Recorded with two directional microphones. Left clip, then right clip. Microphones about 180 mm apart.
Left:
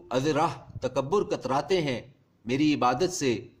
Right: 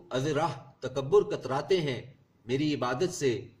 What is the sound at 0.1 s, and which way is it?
A man's voice, 50° left (ahead or behind).